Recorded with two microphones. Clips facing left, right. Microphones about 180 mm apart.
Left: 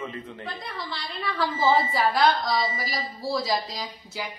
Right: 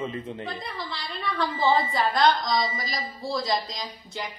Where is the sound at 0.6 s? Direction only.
Centre (ahead or behind).